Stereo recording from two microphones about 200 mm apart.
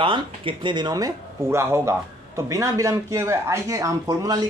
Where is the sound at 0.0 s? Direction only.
25° right (ahead or behind).